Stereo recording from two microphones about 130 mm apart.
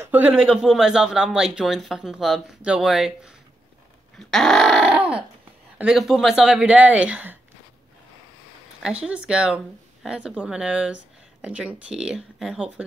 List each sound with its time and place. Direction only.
0.0 s speech: 10° right (ahead or behind)
8.8 s speech: 10° right (ahead or behind)